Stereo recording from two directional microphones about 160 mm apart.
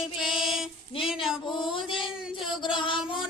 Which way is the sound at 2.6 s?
30° left (ahead or behind).